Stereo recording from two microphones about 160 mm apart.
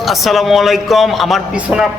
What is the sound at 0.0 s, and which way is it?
A man's voice, centre (ahead or behind).